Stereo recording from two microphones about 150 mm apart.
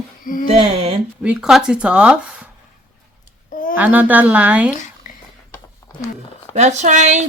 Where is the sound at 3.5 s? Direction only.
65° left (ahead or behind).